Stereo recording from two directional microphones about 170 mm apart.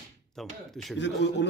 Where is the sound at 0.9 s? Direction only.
90° left.